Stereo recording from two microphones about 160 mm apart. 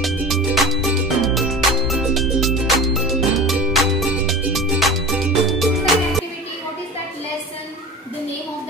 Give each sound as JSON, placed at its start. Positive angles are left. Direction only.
{"t": 0.0, "sound": "music", "side_deg": 0}